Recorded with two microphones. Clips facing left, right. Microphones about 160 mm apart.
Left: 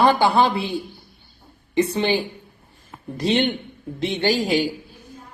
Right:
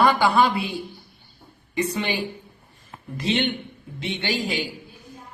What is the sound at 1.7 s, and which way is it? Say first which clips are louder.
A woman's voice: left 5 dB; 30° left (ahead or behind).